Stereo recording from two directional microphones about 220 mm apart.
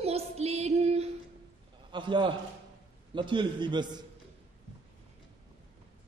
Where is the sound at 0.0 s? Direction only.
30° right (ahead or behind).